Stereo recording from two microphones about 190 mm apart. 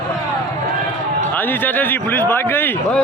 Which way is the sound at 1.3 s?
10° left (ahead or behind).